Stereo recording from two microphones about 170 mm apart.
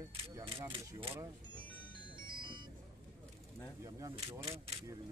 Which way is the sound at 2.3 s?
30° right (ahead or behind).